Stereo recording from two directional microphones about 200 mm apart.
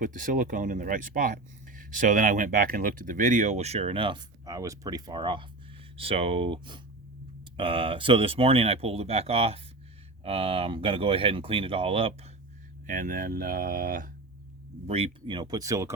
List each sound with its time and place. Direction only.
0.0 s speech: 40° right (ahead or behind)
12.9 s speech: 45° right (ahead or behind)
14.8 s speech: 30° right (ahead or behind)